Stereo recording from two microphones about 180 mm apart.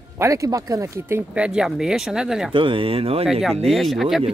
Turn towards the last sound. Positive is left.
turn(degrees=0)  # may be behind; listen again after turning